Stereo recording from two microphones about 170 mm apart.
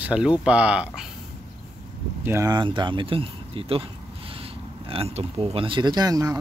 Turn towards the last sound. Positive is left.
turn(degrees=-20)  # may be behind; listen again after turning